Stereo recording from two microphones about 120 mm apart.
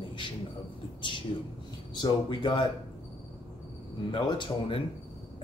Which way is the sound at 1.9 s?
40° left (ahead or behind).